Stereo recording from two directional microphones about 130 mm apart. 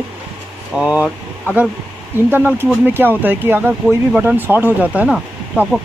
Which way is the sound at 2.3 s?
15° right (ahead or behind).